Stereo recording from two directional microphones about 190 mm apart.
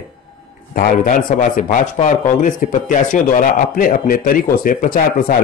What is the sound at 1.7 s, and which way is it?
Speech, 40° left (ahead or behind).